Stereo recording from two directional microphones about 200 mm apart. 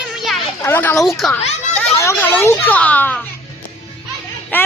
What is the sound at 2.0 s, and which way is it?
Speech, 10° left (ahead or behind).